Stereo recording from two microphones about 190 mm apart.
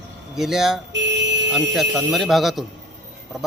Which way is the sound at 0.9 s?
65° right (ahead or behind).